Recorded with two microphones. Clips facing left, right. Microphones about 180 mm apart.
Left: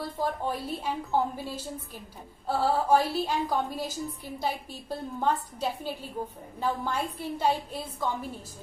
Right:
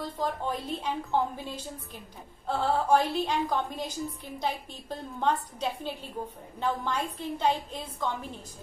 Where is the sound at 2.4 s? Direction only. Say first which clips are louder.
Left 1 dB; 5° left (ahead or behind).